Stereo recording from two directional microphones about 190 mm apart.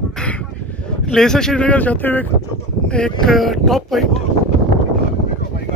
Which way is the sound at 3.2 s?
Centre (ahead or behind).